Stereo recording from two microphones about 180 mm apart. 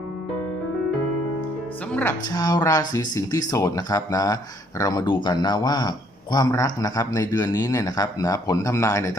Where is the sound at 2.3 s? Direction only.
20° left (ahead or behind).